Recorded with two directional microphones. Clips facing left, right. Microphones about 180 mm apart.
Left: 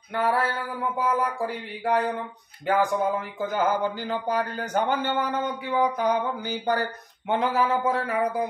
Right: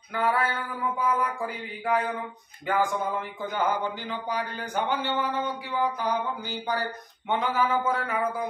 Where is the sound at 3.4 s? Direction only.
45° left (ahead or behind).